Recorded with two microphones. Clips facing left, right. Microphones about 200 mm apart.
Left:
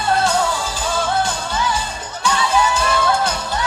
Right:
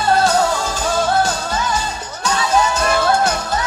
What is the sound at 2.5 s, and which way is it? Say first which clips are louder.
Music: right 3 dB; 40° right (ahead or behind).